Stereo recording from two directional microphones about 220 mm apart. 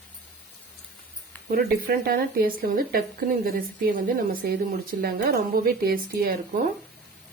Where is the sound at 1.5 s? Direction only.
45° right (ahead or behind).